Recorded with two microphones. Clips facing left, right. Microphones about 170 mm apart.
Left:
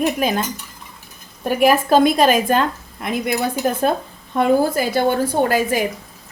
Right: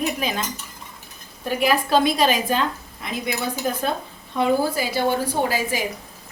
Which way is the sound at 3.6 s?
55° left (ahead or behind).